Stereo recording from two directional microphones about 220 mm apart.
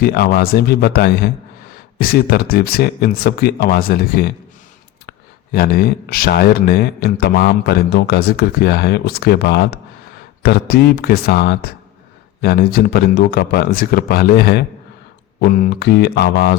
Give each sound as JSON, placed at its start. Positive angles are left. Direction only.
{"t": 0.0, "sound": "speech", "side_deg": 45}